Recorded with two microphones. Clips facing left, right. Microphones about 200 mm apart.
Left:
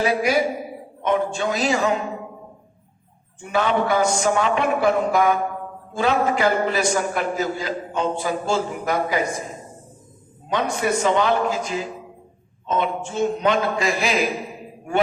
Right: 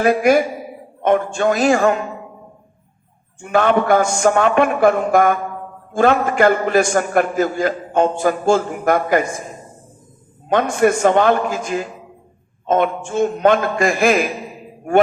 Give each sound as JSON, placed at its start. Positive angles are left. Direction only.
{"t": 0.0, "sound": "a man's voice", "side_deg": -50}
{"t": 3.4, "sound": "a man's voice", "side_deg": -55}
{"t": 10.5, "sound": "a man's voice", "side_deg": -50}